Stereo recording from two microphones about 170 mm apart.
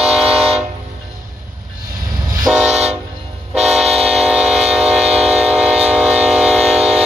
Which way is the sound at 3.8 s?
35° right (ahead or behind).